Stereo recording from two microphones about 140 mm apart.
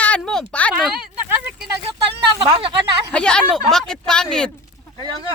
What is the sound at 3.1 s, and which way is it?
Speech, 5° left (ahead or behind).